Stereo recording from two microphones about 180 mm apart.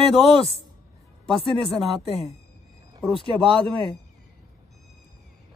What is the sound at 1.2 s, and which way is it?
Speech, centre (ahead or behind).